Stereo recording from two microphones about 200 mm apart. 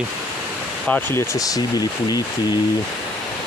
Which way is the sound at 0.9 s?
15° left (ahead or behind).